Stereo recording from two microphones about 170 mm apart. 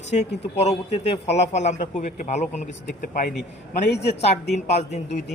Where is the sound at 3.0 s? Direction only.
55° left (ahead or behind).